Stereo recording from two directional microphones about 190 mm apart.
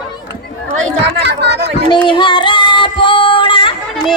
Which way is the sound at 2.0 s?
25° left (ahead or behind).